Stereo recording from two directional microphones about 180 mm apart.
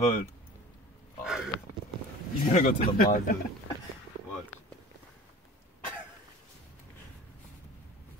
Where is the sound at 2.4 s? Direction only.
40° left (ahead or behind).